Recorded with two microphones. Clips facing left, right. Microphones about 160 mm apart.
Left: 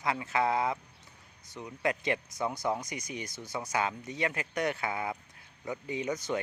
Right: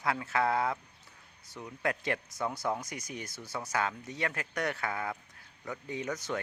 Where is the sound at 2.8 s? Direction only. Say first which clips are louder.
Left 2 dB; 5° right (ahead or behind).